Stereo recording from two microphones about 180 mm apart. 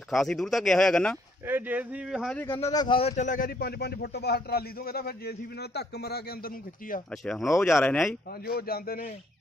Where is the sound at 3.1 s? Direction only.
45° left (ahead or behind).